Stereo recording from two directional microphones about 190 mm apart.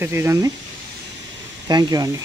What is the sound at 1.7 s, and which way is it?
Speech, 20° right (ahead or behind).